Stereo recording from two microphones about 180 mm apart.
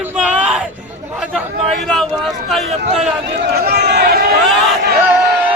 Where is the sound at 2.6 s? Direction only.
35° right (ahead or behind).